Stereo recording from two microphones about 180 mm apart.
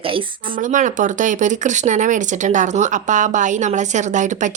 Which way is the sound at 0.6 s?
45° right (ahead or behind).